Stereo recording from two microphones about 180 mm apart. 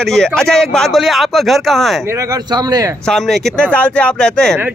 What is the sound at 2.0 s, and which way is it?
Speech, 15° right (ahead or behind).